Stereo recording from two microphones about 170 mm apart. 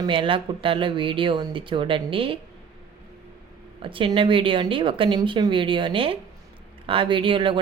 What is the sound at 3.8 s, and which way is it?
A man's voice, 30° right (ahead or behind).